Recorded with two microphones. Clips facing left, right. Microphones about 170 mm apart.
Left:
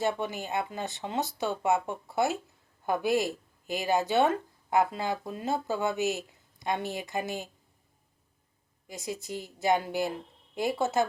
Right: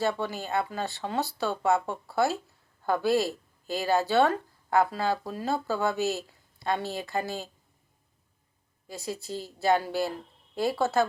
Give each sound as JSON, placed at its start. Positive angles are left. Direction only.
{"t": 0.0, "sound": "speech", "side_deg": 20}
{"t": 8.9, "sound": "speech", "side_deg": 20}